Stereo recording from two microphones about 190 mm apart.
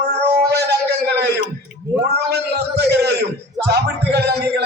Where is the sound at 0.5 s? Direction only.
60° right (ahead or behind).